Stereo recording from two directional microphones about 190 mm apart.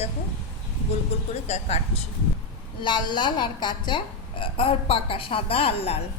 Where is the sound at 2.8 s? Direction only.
25° left (ahead or behind).